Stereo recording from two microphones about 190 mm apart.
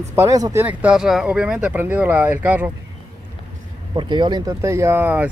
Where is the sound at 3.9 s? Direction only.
25° right (ahead or behind).